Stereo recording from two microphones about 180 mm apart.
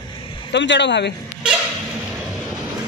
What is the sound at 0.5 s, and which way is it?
Speech, 75° left (ahead or behind).